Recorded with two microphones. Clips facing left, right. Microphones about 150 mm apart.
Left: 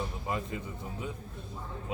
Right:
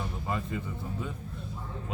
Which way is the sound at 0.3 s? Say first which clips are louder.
Right 3 dB; 15° left (ahead or behind).